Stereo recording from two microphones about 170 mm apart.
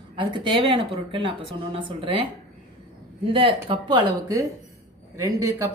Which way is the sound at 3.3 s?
30° right (ahead or behind).